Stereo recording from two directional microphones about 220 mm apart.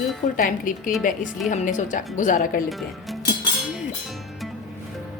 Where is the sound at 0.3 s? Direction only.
40° left (ahead or behind).